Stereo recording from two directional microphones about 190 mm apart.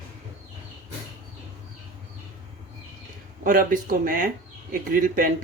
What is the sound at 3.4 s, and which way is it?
Speech, 45° right (ahead or behind).